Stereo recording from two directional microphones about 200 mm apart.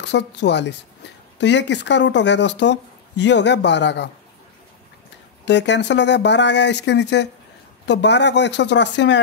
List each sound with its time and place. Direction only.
0.0 s speech: 60° left (ahead or behind)
5.4 s speech: 60° left (ahead or behind)